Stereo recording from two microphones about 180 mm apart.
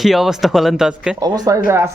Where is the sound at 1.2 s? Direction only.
20° right (ahead or behind).